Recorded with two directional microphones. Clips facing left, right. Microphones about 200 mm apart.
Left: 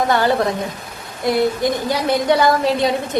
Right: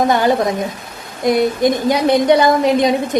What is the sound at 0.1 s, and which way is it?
A woman's voice, 15° right (ahead or behind).